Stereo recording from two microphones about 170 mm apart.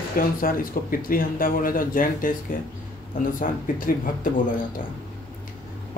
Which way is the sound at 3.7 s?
55° left (ahead or behind).